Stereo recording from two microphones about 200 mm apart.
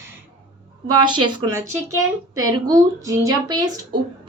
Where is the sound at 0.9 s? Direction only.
20° right (ahead or behind).